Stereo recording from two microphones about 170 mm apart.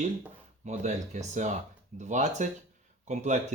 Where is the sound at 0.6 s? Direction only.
45° right (ahead or behind).